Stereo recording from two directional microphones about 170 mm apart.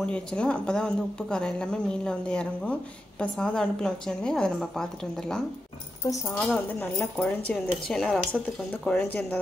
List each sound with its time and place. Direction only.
0.0 s a woman's voice: 5° left (ahead or behind)
6.5 s a woman's voice: 10° left (ahead or behind)